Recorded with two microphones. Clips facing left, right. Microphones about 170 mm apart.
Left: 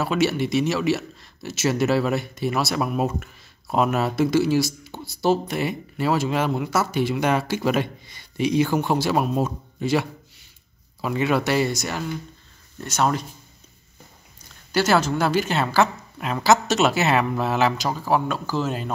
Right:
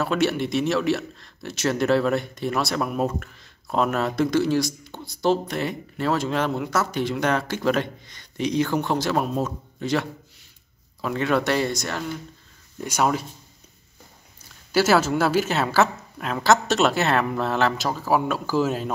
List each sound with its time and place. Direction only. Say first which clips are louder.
0.0 s a man's voice: left 1 dB; 5° left (ahead or behind)
12.7 s speech: even; 10° right (ahead or behind)
14.7 s a woman's voice: right 1 dB; 5° right (ahead or behind)